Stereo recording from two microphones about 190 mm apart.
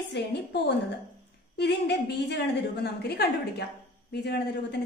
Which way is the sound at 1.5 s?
60° left (ahead or behind).